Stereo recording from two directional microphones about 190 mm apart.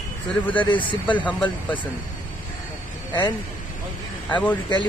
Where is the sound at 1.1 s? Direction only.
10° left (ahead or behind).